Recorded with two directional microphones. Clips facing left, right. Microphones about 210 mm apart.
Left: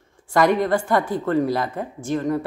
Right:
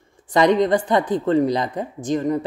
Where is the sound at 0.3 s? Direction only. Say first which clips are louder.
Right 2 dB; 20° right (ahead or behind).